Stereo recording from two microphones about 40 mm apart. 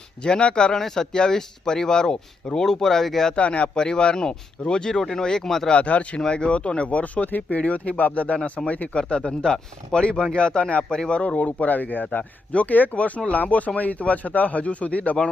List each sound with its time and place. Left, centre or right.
0.2 s speech: left; by 3.3 s centre
3.3 s speech: left
3.8 s speech: centre
5.7 s speech: left
6.1 s speech: left
7.3 s speech: left
7.6 s speech: left
10.8 s speech: centre
11.3 s speech: left